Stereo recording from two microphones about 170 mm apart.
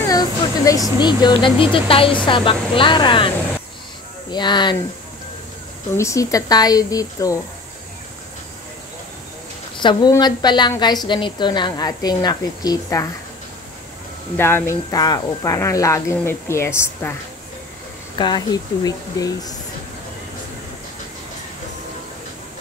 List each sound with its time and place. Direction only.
0.1 s a sound: 20° left (ahead or behind)
0.9 s a woman's voice: 25° left (ahead or behind)
5.9 s a woman's voice: 20° left (ahead or behind)
9.8 s a woman's voice: 25° left (ahead or behind)
14.3 s speech: 15° left (ahead or behind)
18.1 s a woman's voice: 25° left (ahead or behind)